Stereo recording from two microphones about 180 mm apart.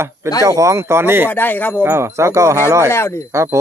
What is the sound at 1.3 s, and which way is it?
Speech, 10° left (ahead or behind).